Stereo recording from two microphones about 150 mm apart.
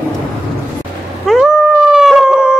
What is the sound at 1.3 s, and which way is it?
Howl, centre (ahead or behind).